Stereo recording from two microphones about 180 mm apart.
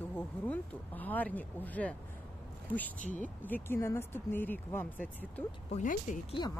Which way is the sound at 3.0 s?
45° left (ahead or behind).